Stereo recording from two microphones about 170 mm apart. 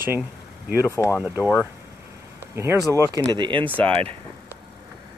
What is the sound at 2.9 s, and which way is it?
Speech, 20° right (ahead or behind).